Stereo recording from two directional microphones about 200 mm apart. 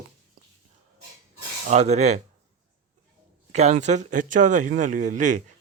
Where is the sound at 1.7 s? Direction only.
35° right (ahead or behind).